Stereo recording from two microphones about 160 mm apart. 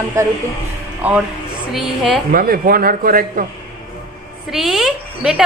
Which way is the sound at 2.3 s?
65° right (ahead or behind).